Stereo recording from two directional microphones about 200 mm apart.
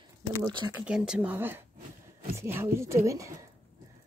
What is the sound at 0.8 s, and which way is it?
Speech, 5° right (ahead or behind).